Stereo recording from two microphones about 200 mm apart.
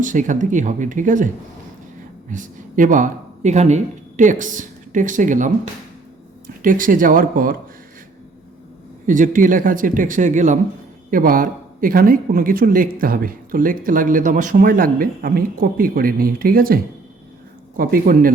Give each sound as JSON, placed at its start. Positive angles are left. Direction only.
{"t": 0.0, "sound": "speech", "side_deg": -40}
{"t": 2.3, "sound": "speech", "side_deg": -40}
{"t": 6.6, "sound": "speech", "side_deg": -40}
{"t": 9.0, "sound": "speech", "side_deg": -40}